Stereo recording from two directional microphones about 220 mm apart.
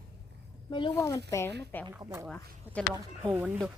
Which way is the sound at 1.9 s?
15° right (ahead or behind).